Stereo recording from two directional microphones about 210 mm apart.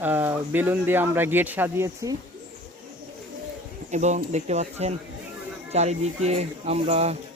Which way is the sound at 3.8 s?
35° right (ahead or behind).